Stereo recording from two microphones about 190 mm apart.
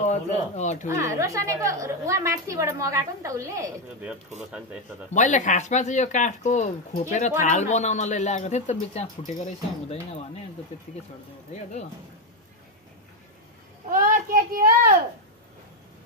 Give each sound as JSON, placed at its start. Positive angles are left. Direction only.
{"t": 0.0, "sound": "speech", "side_deg": 35}
{"t": 0.8, "sound": "a woman's voice", "side_deg": -15}
{"t": 4.4, "sound": "speech", "side_deg": -5}
{"t": 5.1, "sound": "speech", "side_deg": 40}
{"t": 11.5, "sound": "speech", "side_deg": 40}
{"t": 13.8, "sound": "speech", "side_deg": -45}